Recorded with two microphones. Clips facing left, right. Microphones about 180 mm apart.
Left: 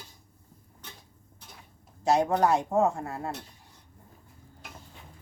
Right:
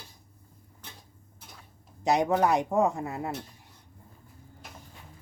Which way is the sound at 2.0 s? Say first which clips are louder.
Even; 15° right (ahead or behind).